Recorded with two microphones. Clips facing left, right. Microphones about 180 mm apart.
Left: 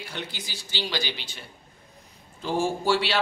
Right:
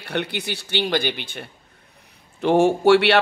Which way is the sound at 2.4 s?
70° right (ahead or behind).